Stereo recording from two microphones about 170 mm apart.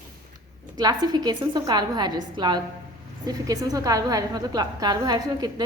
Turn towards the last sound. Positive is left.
turn(degrees=-20)  # may be behind; listen again after turning